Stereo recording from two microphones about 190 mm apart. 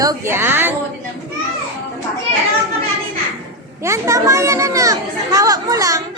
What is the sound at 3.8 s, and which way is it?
Speech, 15° right (ahead or behind).